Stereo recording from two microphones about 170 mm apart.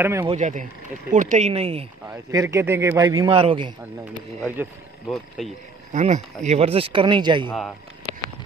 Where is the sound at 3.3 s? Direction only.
30° right (ahead or behind).